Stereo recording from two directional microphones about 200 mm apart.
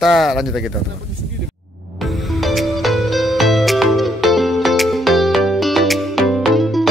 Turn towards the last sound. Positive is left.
turn(degrees=0)  # may be behind; listen again after turning